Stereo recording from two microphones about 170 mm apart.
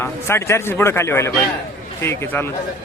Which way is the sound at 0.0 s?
15° left (ahead or behind).